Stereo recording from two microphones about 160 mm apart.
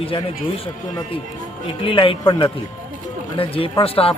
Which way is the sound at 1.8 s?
35° left (ahead or behind).